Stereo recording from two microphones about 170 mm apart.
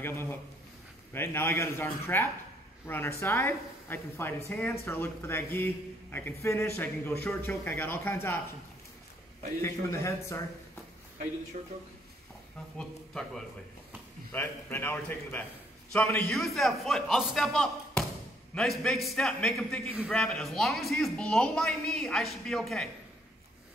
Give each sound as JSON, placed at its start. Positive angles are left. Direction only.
{"t": 0.0, "sound": "a woman's voice", "side_deg": 10}
{"t": 9.6, "sound": "a woman's voice", "side_deg": 15}
{"t": 11.6, "sound": "speech", "side_deg": -40}
{"t": 12.7, "sound": "a woman's voice", "side_deg": 5}